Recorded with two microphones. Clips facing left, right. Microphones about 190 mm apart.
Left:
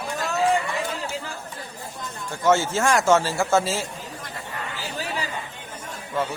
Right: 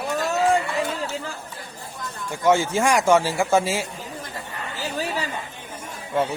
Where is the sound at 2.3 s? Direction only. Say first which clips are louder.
Right 1 dB; 15° right (ahead or behind).